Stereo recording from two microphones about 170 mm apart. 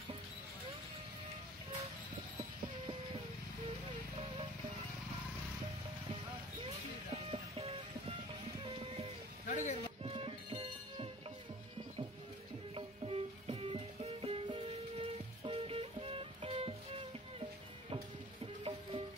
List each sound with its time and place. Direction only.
7.2 s music: 35° right (ahead or behind)
9.5 s a sound: 45° left (ahead or behind)
10.0 s music: 35° right (ahead or behind)
12.7 s music: 35° right (ahead or behind)